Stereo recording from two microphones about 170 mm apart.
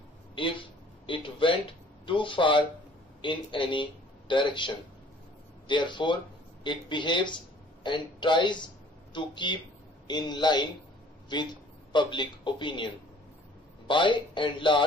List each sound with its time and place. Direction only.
1.0 s speech: 30° left (ahead or behind)